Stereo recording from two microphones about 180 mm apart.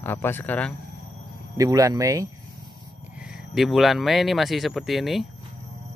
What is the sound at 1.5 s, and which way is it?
Speech, 20° right (ahead or behind).